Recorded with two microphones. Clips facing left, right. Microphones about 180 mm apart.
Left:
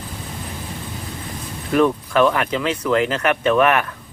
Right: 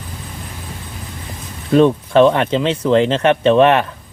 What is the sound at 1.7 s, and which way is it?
Speech, 25° right (ahead or behind).